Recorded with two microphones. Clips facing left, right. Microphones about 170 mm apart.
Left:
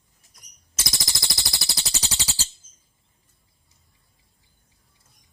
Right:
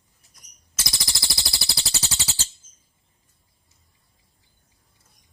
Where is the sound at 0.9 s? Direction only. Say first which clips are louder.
Left 1 dB; 20° left (ahead or behind).